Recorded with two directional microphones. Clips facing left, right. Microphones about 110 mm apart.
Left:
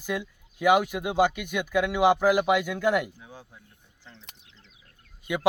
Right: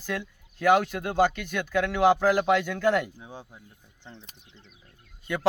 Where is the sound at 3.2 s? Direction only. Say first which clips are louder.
Right 4 dB; 25° right (ahead or behind).